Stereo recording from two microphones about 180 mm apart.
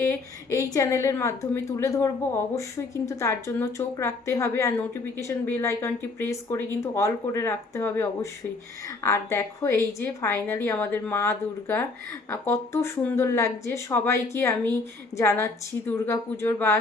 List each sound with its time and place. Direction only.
0.0 s a woman's voice: 15° left (ahead or behind)